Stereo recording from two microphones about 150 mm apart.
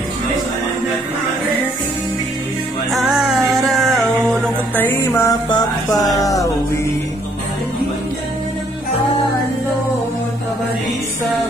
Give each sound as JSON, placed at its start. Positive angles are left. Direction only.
{"t": 2.9, "sound": "music", "side_deg": 0}
{"t": 4.7, "sound": "music", "side_deg": 10}
{"t": 5.3, "sound": "music", "side_deg": 25}